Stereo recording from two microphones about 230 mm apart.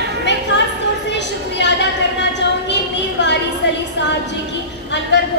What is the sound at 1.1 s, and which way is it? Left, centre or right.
Speech, left.